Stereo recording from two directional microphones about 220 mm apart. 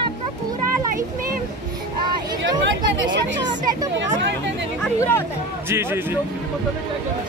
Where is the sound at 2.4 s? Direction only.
55° right (ahead or behind).